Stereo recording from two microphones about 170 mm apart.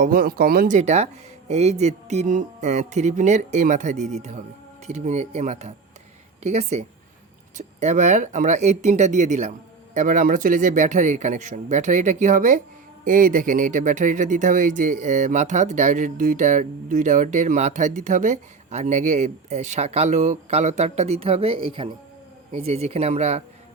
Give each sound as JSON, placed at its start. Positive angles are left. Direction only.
{"t": 0.0, "sound": "speech", "side_deg": -60}